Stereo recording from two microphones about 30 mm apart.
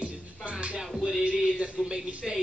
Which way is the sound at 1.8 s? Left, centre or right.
Centre.